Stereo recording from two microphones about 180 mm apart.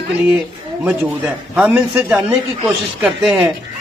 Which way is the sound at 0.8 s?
5° right (ahead or behind).